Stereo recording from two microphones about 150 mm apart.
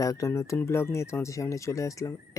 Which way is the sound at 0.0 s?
20° left (ahead or behind).